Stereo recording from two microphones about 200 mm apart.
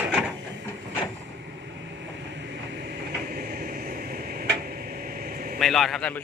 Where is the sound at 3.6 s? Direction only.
45° right (ahead or behind).